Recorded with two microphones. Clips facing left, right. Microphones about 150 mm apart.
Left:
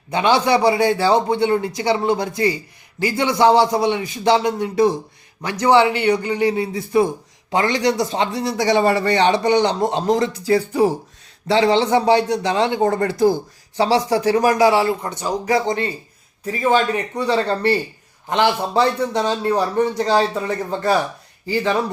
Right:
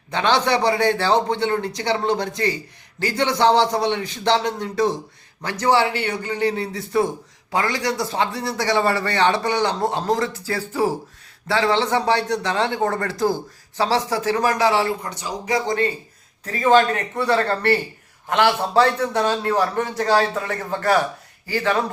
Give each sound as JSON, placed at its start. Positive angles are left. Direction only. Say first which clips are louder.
{"t": 0.1, "sound": "a man's voice", "louder": "left 3 dB", "side_deg": 10}
{"t": 15.4, "sound": "a man's voice", "louder": "left 1 dB", "side_deg": 30}
{"t": 16.5, "sound": "a man's voice", "louder": "right 1 dB", "side_deg": 15}